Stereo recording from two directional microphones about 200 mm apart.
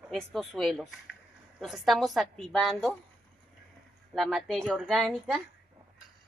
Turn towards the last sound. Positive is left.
turn(degrees=0)  # may be behind; listen again after turning